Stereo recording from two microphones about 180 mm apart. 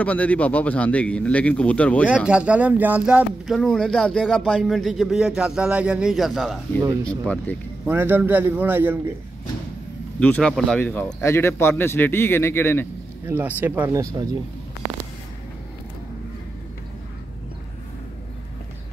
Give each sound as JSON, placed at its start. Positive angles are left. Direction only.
{"t": 0.0, "sound": "speech", "side_deg": 10}
{"t": 2.2, "sound": "speech", "side_deg": -5}
{"t": 6.8, "sound": "speech", "side_deg": -15}
{"t": 7.1, "sound": "speech", "side_deg": 5}
{"t": 7.8, "sound": "a man's voice", "side_deg": -10}
{"t": 10.2, "sound": "speech", "side_deg": 5}
{"t": 13.3, "sound": "a man's voice", "side_deg": -10}